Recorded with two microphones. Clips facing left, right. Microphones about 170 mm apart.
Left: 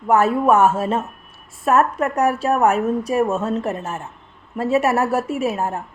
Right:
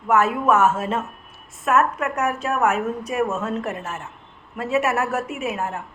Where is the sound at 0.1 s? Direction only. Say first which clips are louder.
Left 3 dB; 30° left (ahead or behind).